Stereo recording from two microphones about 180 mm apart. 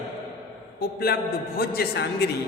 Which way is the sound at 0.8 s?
60° left (ahead or behind).